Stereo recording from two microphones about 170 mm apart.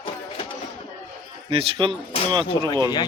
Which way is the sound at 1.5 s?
30° right (ahead or behind).